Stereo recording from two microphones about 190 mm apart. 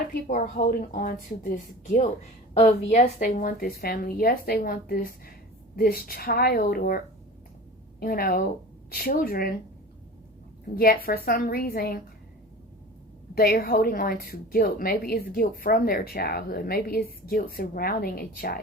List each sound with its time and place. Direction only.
0.1 s a woman's voice: 45° left (ahead or behind)
10.8 s a woman's voice: 50° left (ahead or behind)
13.3 s a woman's voice: 55° left (ahead or behind)